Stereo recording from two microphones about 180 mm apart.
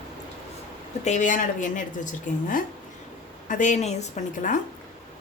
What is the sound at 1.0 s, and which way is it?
A woman's voice, 40° left (ahead or behind).